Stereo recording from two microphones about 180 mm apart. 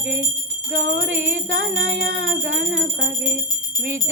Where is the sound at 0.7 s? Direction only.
55° right (ahead or behind).